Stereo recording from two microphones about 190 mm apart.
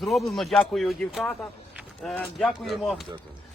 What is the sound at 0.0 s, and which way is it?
Speech, centre (ahead or behind).